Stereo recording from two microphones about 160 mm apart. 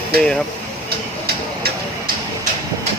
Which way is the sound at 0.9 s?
80° right.